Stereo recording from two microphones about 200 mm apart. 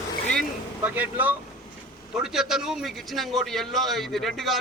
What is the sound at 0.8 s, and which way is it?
A man's voice, 10° right (ahead or behind).